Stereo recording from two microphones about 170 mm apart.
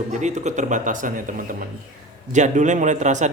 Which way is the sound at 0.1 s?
45° right (ahead or behind).